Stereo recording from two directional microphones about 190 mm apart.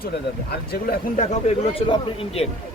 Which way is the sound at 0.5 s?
55° left (ahead or behind).